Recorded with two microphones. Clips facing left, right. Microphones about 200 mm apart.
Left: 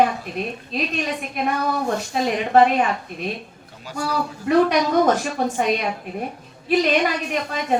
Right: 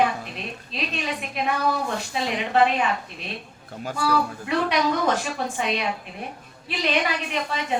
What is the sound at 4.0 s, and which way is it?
A woman's voice, 45° left (ahead or behind).